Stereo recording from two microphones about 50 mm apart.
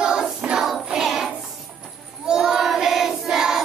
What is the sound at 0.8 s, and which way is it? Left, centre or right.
Music, centre.